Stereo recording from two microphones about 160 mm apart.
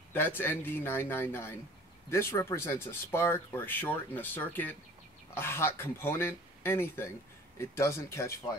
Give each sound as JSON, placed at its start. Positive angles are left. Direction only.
{"t": 0.1, "sound": "speech", "side_deg": 15}